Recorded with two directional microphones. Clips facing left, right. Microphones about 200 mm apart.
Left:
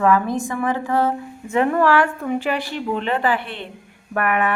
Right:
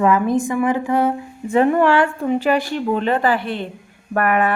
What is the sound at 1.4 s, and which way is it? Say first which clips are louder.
Speech: right 4 dB; 30° right (ahead or behind).